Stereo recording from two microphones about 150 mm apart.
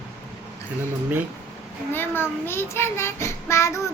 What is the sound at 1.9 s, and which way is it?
Child singing, 15° left (ahead or behind).